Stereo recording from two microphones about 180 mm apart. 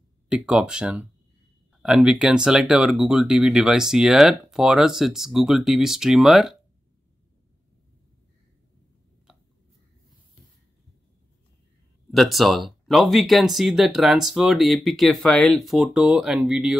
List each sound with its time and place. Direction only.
0.3 s speech: 5° right (ahead or behind)
9.3 s a sound: 5° right (ahead or behind)
12.1 s speech: centre (ahead or behind)